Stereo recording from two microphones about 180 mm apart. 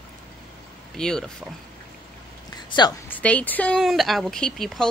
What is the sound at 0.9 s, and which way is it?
Speech, 5° left (ahead or behind).